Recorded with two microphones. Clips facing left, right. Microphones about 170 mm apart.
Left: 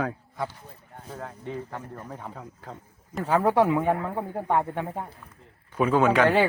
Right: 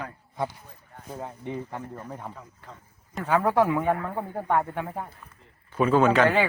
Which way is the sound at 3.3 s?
25° left (ahead or behind).